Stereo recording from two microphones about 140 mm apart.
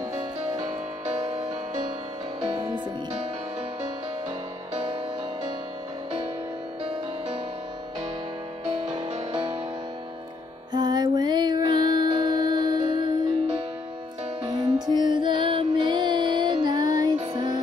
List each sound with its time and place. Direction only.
0.1 s music: 25° right (ahead or behind)
1.0 s music: 50° right (ahead or behind)
2.5 s music: 35° right (ahead or behind)
9.3 s music: 40° right (ahead or behind)
10.7 s music: 30° right (ahead or behind)
14.5 s music: 30° right (ahead or behind)